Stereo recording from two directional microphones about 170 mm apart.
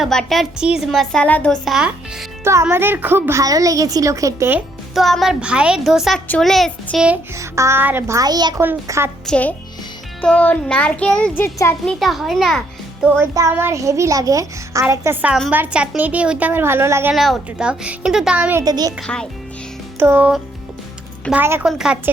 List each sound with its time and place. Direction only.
0.0 s a woman's voice: centre (ahead or behind)
2.4 s a woman's voice: 15° right (ahead or behind)
4.9 s a woman's voice: centre (ahead or behind)
7.3 s a woman's voice: 15° right (ahead or behind)
9.2 s child singing: 10° left (ahead or behind)
11.9 s a child's voice: centre (ahead or behind)
13.1 s a woman's voice: 15° right (ahead or behind)
17.2 s a woman's voice: centre (ahead or behind)
18.6 s a child's voice: 25° right (ahead or behind)
19.0 s a woman's voice: 5° left (ahead or behind)
20.0 s a woman's voice: 10° right (ahead or behind)